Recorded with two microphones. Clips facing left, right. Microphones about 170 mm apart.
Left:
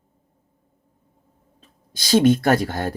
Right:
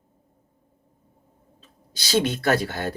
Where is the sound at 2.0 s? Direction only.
50° left (ahead or behind).